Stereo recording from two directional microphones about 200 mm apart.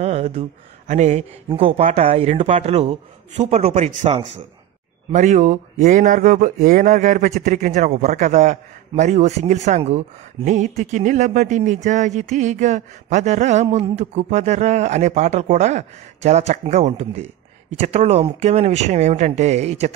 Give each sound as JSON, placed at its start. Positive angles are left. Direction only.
{"t": 0.0, "sound": "mantra", "side_deg": -30}
{"t": 1.5, "sound": "speech", "side_deg": -25}